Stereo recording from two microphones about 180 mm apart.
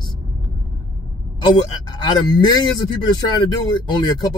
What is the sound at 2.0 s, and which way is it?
Speech, 25° left (ahead or behind).